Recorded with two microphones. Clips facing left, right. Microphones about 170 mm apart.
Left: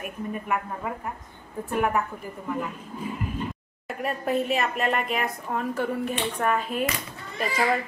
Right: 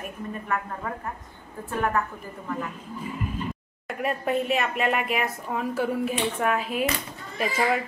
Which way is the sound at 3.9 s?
Centre (ahead or behind).